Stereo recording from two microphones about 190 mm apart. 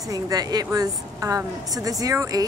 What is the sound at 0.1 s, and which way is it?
A woman's voice, 20° right (ahead or behind).